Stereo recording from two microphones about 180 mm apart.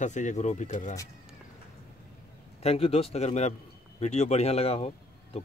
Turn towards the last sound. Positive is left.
turn(degrees=35)  # may be behind; listen again after turning